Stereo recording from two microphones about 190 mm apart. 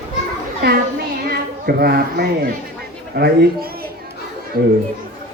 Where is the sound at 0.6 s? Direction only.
55° right (ahead or behind).